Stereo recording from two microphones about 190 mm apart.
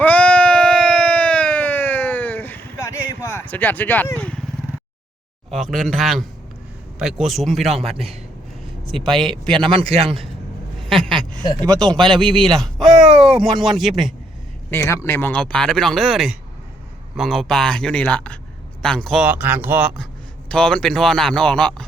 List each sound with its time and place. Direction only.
0.0 s a sound: 5° left (ahead or behind)
5.5 s a man's voice: centre (ahead or behind)
7.6 s a man's voice: 35° right (ahead or behind)
11.1 s a sound: 25° right (ahead or behind)
12.1 s a man's voice: 25° right (ahead or behind)
12.5 s a man's voice: centre (ahead or behind)
14.7 s a man's voice: 15° left (ahead or behind); by 19.9 s 10° right (ahead or behind)
20.5 s a man's voice: 5° left (ahead or behind)